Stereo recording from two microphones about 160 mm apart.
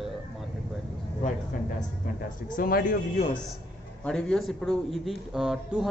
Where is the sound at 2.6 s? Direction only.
65° left (ahead or behind).